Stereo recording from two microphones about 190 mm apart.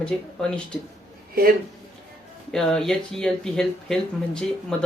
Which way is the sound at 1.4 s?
50° right (ahead or behind).